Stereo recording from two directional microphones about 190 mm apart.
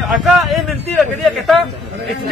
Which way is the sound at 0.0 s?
Centre (ahead or behind).